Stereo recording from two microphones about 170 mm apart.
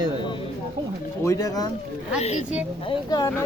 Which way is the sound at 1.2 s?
20° left (ahead or behind).